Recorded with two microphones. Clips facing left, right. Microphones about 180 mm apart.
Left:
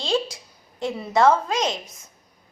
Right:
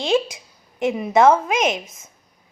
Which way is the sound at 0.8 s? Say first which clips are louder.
Right 4 dB; 15° right (ahead or behind).